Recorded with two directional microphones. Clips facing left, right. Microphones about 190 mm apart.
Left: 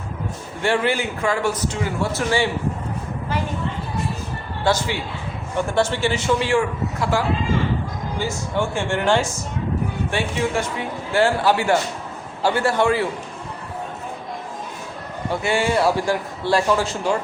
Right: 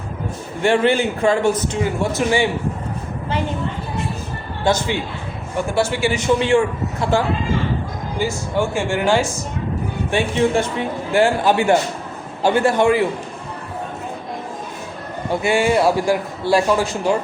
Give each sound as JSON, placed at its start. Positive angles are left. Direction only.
{"t": 0.6, "sound": "a man's voice", "side_deg": -20}
{"t": 4.6, "sound": "a man's voice", "side_deg": -20}
{"t": 5.5, "sound": "a man's voice", "side_deg": -10}
{"t": 8.2, "sound": "a man's voice", "side_deg": -10}
{"t": 10.1, "sound": "a man's voice", "side_deg": -20}
{"t": 11.1, "sound": "a man's voice", "side_deg": -15}
{"t": 15.3, "sound": "a man's voice", "side_deg": -15}